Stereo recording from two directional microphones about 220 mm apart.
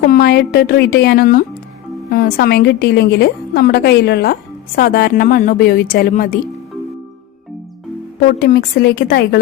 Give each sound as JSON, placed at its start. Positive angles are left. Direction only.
{"t": 0.0, "sound": "a woman's voice", "side_deg": 45}
{"t": 8.4, "sound": "a woman's voice", "side_deg": 45}